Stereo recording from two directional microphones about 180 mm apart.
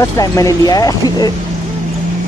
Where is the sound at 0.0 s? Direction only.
20° left (ahead or behind).